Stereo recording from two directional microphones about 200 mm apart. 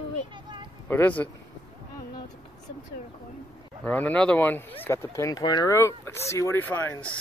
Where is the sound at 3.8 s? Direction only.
10° left (ahead or behind).